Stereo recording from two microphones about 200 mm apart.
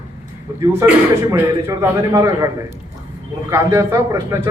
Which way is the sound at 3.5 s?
15° right (ahead or behind).